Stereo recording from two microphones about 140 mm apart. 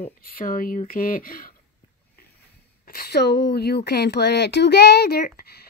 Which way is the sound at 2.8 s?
90° left.